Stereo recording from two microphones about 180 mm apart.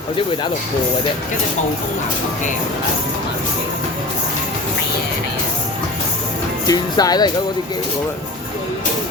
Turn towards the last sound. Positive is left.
turn(degrees=20)  # may be behind; listen again after turning